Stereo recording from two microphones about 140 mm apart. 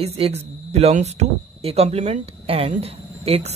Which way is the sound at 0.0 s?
45° right (ahead or behind).